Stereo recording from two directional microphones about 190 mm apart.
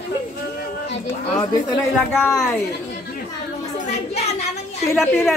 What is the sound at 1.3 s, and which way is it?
Speech, 20° left (ahead or behind).